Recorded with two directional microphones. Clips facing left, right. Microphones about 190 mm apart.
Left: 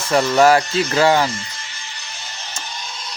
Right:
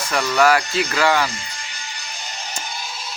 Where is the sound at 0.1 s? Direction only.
30° left (ahead or behind).